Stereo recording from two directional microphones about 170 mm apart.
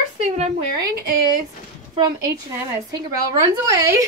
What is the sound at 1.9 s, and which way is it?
A woman's voice, 20° right (ahead or behind).